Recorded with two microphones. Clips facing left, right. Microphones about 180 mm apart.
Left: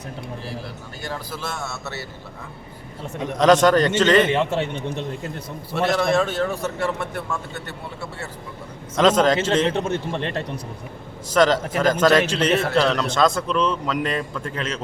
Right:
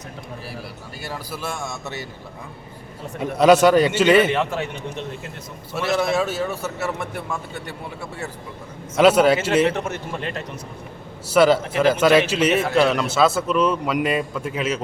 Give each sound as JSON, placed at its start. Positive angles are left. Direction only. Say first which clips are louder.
{"t": 1.0, "sound": "a man's voice", "louder": "even", "side_deg": -10}
{"t": 3.2, "sound": "a man's voice", "louder": "right 2 dB", "side_deg": -10}
{"t": 4.4, "sound": "a man's voice", "louder": "left 2 dB", "side_deg": 30}
{"t": 5.7, "sound": "a man's voice", "louder": "left 1 dB", "side_deg": -5}
{"t": 9.0, "sound": "a man's voice", "louder": "right 2 dB", "side_deg": -10}
{"t": 9.6, "sound": "a man's voice", "louder": "left 1 dB", "side_deg": 30}
{"t": 11.3, "sound": "a man's voice", "louder": "right 2 dB", "side_deg": -10}